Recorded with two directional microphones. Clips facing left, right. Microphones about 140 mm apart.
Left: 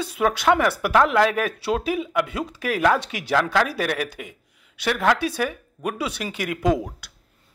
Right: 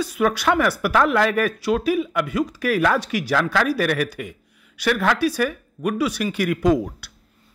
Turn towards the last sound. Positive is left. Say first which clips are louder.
# right 3 dB
turn(degrees=20)  # may be behind; listen again after turning